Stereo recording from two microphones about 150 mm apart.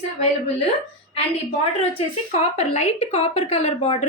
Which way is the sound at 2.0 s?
45° left (ahead or behind).